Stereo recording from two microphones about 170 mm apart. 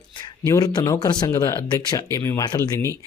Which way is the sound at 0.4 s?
20° left (ahead or behind).